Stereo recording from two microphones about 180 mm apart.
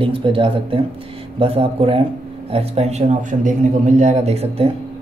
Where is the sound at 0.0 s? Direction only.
30° right (ahead or behind).